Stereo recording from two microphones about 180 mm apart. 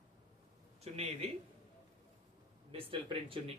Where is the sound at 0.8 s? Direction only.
35° right (ahead or behind).